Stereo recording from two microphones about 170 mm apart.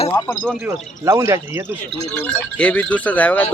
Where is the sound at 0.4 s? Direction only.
Centre (ahead or behind).